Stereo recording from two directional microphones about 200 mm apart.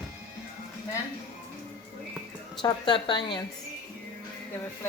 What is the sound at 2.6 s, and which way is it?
Speech, 20° left (ahead or behind).